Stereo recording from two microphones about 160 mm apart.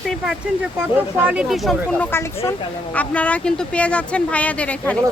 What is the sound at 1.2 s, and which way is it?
Speech, 5° right (ahead or behind).